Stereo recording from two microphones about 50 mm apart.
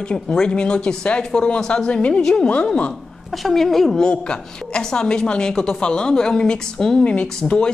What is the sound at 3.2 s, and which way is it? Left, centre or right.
Speech, centre.